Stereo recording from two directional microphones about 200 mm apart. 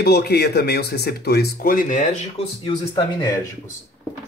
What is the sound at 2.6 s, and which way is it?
Speech, 20° left (ahead or behind).